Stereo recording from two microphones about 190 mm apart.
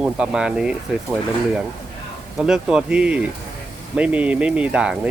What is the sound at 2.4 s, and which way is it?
Speech, 5° right (ahead or behind).